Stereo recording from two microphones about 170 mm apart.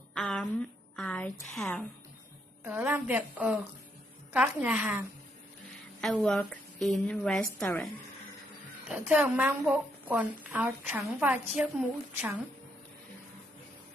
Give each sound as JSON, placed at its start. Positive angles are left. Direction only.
{"t": 0.1, "sound": "a woman's voice", "side_deg": 5}
{"t": 2.6, "sound": "a woman's voice", "side_deg": -10}
{"t": 5.9, "sound": "a woman's voice", "side_deg": 5}
{"t": 8.8, "sound": "a woman's voice", "side_deg": -5}